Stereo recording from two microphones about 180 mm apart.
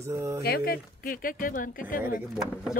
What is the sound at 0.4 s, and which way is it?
Speech, 55° left (ahead or behind).